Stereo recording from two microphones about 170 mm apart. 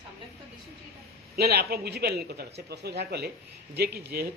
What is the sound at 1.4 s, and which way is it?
A man's voice, 70° right (ahead or behind).